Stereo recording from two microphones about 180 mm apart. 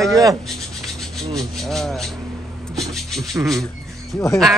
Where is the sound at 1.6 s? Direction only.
Centre (ahead or behind).